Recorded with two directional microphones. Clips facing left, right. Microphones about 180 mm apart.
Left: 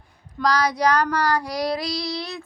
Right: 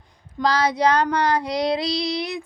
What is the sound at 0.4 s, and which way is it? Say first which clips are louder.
Female singing: right 1 dB; 25° right (ahead or behind).